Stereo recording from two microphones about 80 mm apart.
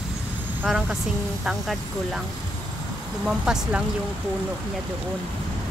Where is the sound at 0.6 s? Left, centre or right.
Centre.